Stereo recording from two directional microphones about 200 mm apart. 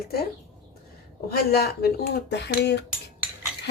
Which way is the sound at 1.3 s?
50° left (ahead or behind).